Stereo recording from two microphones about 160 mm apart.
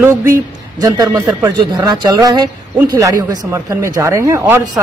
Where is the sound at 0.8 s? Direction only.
20° right (ahead or behind).